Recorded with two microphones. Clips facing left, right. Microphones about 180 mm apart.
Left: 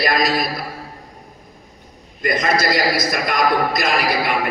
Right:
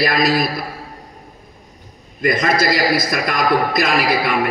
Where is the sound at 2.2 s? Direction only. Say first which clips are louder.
Right 2 dB; 55° right (ahead or behind).